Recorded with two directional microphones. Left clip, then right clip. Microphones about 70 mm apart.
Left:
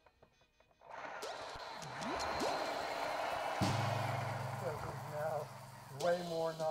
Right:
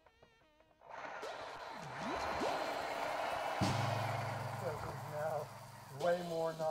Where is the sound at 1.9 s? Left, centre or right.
Centre.